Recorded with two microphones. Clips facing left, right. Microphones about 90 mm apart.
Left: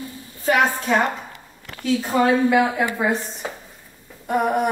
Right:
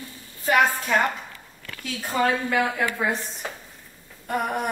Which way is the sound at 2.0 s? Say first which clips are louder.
Left 5 dB; 10° left (ahead or behind).